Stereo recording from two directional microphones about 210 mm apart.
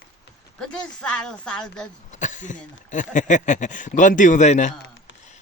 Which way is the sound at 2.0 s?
35° left (ahead or behind).